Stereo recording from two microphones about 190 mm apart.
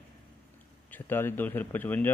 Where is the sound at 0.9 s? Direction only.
10° left (ahead or behind).